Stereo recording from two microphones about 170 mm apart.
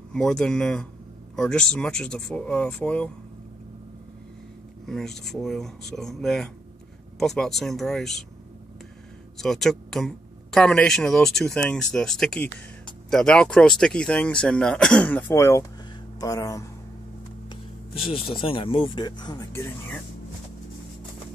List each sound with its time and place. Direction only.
0.1 s speech: 5° left (ahead or behind)
4.8 s speech: centre (ahead or behind)
9.4 s speech: 5° left (ahead or behind); by 16.6 s 20° left (ahead or behind)
18.0 s speech: 30° left (ahead or behind); by 20.0 s 15° left (ahead or behind)